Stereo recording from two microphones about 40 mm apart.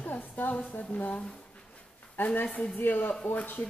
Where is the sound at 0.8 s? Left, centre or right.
Left.